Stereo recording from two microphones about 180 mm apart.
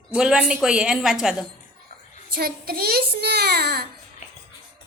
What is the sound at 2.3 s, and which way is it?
A child's voice, 60° right (ahead or behind).